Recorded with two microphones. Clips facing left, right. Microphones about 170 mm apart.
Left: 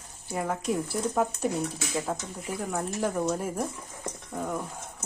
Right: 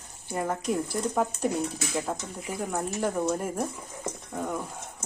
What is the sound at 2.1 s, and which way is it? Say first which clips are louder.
Speech: even; 10° right (ahead or behind).